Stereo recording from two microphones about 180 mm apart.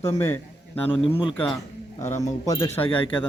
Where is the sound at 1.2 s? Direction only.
30° left (ahead or behind).